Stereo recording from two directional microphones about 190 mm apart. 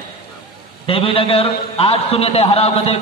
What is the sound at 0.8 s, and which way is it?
A man's voice, 30° left (ahead or behind).